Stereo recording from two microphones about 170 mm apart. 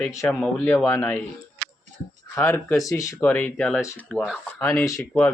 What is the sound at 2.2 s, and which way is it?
Speech, 15° left (ahead or behind).